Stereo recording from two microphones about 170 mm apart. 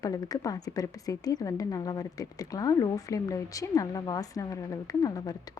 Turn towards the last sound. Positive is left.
turn(degrees=20)  # may be behind; listen again after turning